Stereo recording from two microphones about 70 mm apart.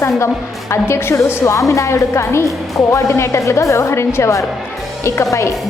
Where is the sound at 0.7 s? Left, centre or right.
Left.